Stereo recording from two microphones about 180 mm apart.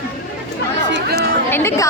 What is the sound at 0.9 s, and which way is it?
Chatter, 60° right (ahead or behind).